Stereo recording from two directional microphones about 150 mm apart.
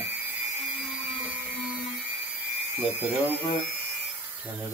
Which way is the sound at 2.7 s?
10° right (ahead or behind).